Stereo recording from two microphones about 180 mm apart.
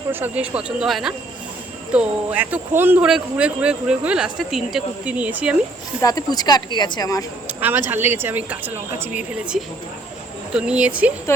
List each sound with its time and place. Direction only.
0.1 s a man's voice: 10° right (ahead or behind)
6.0 s speech: 20° left (ahead or behind)
7.4 s a man's voice: 10° right (ahead or behind)
10.5 s a man's voice: 5° right (ahead or behind)
11.3 s speech: 15° left (ahead or behind)